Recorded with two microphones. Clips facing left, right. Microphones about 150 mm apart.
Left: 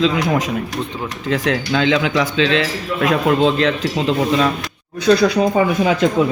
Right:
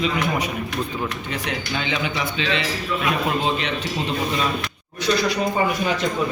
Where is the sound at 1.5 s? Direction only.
90° left.